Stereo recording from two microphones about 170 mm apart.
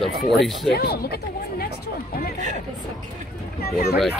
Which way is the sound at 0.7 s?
70° left (ahead or behind).